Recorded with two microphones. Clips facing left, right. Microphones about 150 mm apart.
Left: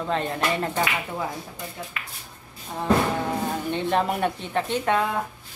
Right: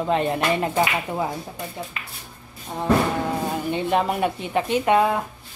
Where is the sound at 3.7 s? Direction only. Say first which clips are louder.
Right 2 dB; 5° right (ahead or behind).